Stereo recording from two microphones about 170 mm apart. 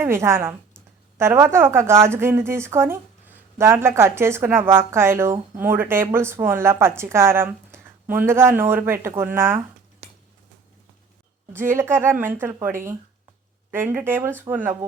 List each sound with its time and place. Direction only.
0.0 s a woman's voice: 15° right (ahead or behind)
10.0 s a sound: 40° right (ahead or behind)
11.5 s a woman's voice: 15° right (ahead or behind)